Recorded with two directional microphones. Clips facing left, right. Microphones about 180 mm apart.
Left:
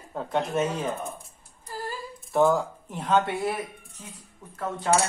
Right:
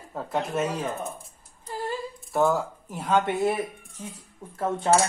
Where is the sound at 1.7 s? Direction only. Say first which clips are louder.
Right 4 dB; 25° right (ahead or behind).